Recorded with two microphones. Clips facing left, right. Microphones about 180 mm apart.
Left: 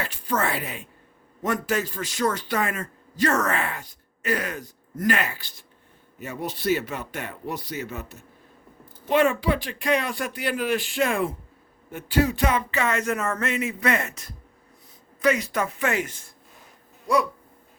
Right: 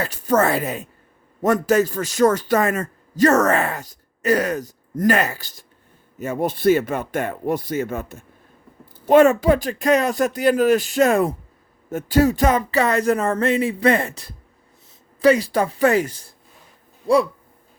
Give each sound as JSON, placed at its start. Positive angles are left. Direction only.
{"t": 0.0, "sound": "a man's voice", "side_deg": -40}